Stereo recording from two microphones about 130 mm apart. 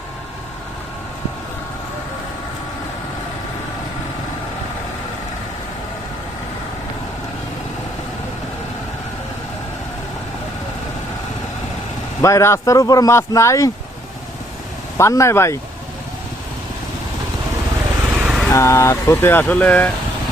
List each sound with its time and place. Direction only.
12.2 s speech: 20° left (ahead or behind)
14.9 s speech: 20° left (ahead or behind)
18.2 s vehicle: 5° right (ahead or behind)
18.5 s speech: 25° left (ahead or behind)